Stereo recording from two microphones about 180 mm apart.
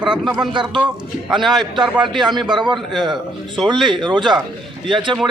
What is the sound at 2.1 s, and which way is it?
Speech, 25° right (ahead or behind).